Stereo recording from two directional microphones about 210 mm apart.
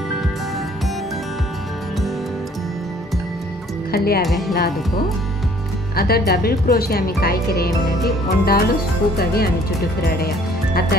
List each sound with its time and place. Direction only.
3.9 s speech: 45° left (ahead or behind)
4.2 s speech: centre (ahead or behind)
5.9 s speech: 45° left (ahead or behind)